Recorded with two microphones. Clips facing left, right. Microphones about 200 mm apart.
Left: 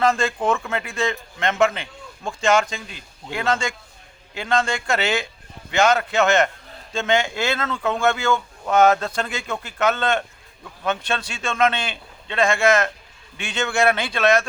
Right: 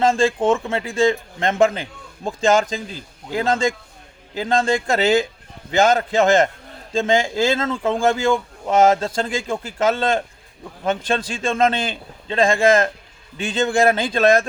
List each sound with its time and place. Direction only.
0.0 s a man's voice: 30° right (ahead or behind)